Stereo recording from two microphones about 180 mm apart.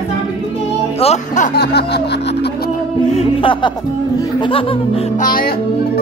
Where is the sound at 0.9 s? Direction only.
35° left (ahead or behind).